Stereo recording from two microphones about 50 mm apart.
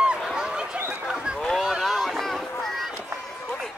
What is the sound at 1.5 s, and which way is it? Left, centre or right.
Boat, centre.